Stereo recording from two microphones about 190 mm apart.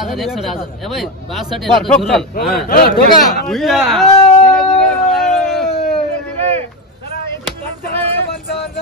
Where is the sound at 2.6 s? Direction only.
50° left (ahead or behind).